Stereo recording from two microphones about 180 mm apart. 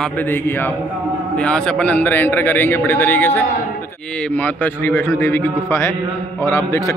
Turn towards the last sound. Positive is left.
turn(degrees=15)  # may be behind; listen again after turning